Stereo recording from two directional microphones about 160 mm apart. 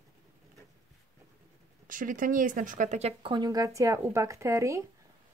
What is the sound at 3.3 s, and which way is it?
Speech, 25° right (ahead or behind).